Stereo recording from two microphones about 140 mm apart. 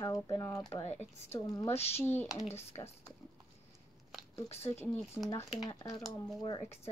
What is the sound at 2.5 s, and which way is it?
Speech, 50° left (ahead or behind).